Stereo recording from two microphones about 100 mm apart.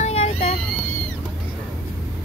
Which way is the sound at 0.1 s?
90° left.